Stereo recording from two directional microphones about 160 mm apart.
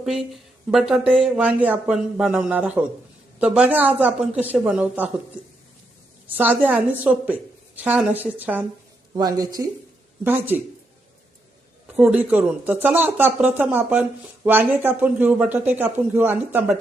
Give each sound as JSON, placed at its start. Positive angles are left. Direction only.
{"t": 0.0, "sound": "speech", "side_deg": 0}
{"t": 6.2, "sound": "speech", "side_deg": -10}
{"t": 9.1, "sound": "speech", "side_deg": -25}
{"t": 10.2, "sound": "speech", "side_deg": -10}
{"t": 11.9, "sound": "speech", "side_deg": -5}